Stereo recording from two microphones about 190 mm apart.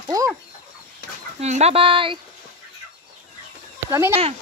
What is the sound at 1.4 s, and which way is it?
Speech, 35° right (ahead or behind).